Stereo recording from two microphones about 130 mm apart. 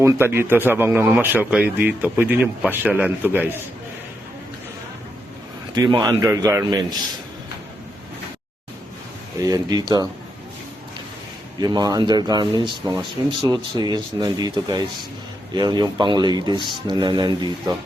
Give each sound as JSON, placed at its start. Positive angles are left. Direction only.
{"t": 0.0, "sound": "speech", "side_deg": -20}
{"t": 5.7, "sound": "a man's voice", "side_deg": -30}
{"t": 9.4, "sound": "speech", "side_deg": -30}
{"t": 11.6, "sound": "speech", "side_deg": -30}